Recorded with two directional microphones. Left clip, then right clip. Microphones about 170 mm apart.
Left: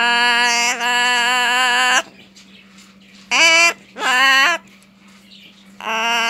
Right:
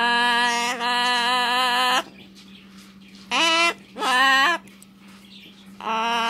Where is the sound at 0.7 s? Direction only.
Centre (ahead or behind).